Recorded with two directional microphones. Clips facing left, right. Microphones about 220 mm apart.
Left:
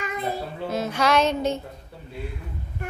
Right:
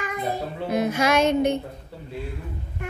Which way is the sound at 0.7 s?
10° right (ahead or behind).